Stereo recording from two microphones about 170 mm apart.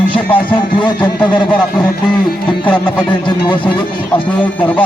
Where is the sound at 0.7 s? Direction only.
25° left (ahead or behind).